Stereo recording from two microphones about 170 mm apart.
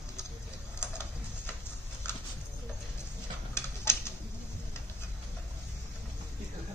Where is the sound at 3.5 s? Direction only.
15° left (ahead or behind).